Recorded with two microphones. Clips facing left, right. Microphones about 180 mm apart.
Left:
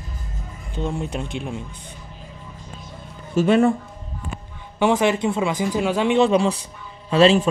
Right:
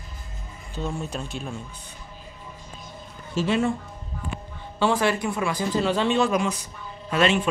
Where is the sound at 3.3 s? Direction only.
55° left (ahead or behind).